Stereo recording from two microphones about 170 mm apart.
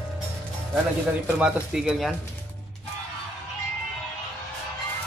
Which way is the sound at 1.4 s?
5° right (ahead or behind).